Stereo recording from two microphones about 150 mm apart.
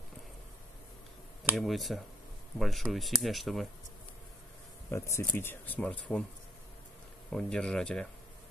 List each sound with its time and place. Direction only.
1.5 s speech: centre (ahead or behind)
4.9 s speech: 20° left (ahead or behind)
7.2 s speech: 5° left (ahead or behind)